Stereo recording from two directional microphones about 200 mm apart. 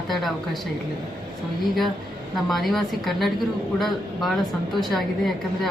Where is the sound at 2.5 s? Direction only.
Centre (ahead or behind).